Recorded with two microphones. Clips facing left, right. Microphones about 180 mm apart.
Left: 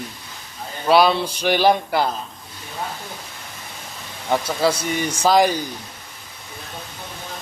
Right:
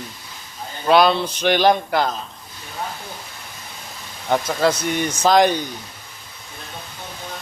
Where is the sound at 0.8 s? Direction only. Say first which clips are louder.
Even; 5° left (ahead or behind).